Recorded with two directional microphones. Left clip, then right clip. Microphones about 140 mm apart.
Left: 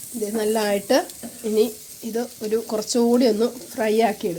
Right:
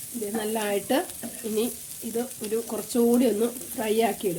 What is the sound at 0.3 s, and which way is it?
Speech, 45° left (ahead or behind).